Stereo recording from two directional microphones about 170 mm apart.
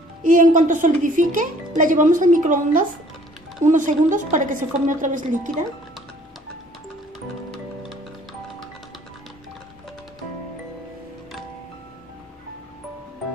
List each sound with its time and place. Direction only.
0.2 s speech: 50° right (ahead or behind)